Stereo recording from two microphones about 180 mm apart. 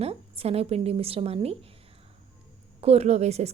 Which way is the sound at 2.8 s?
35° right (ahead or behind).